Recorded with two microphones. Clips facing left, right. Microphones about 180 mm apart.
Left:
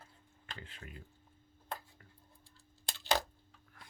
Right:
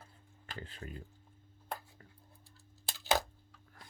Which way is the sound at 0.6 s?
40° right (ahead or behind).